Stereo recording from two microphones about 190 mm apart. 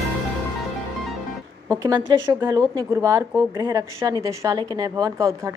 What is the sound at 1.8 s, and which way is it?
Speech, 20° right (ahead or behind).